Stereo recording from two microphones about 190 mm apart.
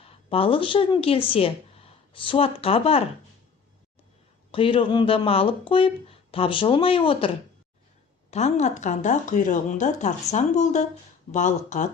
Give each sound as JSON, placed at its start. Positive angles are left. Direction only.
{"t": 0.0, "sound": "speech", "side_deg": 30}
{"t": 4.5, "sound": "speech", "side_deg": 30}
{"t": 8.3, "sound": "speech", "side_deg": 35}